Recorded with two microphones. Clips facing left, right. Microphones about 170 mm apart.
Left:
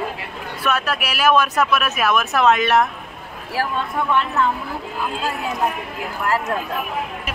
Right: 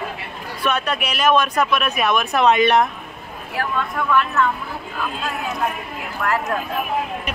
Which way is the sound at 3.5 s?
30° left (ahead or behind).